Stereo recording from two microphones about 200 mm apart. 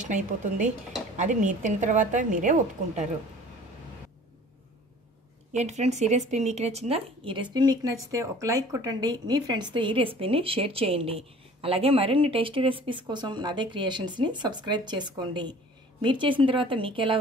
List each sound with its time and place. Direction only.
0.0 s a woman's voice: 40° right (ahead or behind)
5.5 s a woman's voice: 35° right (ahead or behind)